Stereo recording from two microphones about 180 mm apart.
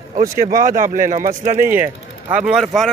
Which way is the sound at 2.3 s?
5° right (ahead or behind).